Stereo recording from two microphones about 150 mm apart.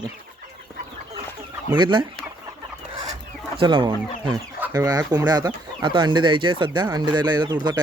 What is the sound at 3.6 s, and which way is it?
Chicken, 30° right (ahead or behind).